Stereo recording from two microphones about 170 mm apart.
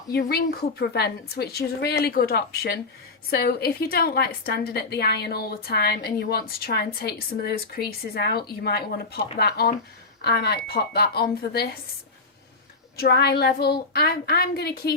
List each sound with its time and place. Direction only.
0.1 s a woman's voice: 70° left (ahead or behind)
13.0 s a woman's voice: 75° left (ahead or behind)